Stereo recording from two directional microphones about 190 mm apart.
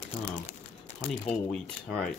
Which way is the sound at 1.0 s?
5° left (ahead or behind).